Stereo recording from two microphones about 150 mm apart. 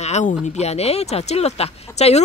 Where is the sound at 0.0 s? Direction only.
50° left (ahead or behind).